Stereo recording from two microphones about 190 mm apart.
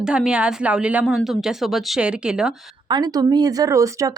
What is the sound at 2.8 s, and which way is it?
Speech, 20° right (ahead or behind).